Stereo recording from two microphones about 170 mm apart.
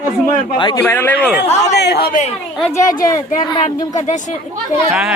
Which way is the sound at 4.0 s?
45° left (ahead or behind).